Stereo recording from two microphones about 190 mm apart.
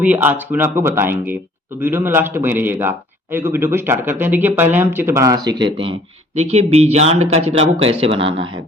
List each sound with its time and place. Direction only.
0.0 s speech: 10° right (ahead or behind); by 8.3 s 30° right (ahead or behind)